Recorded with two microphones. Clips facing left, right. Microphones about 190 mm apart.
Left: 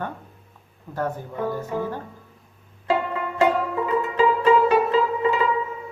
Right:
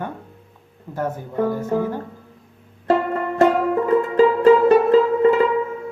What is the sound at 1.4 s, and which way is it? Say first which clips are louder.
Speech: right 4 dB; 45° right (ahead or behind).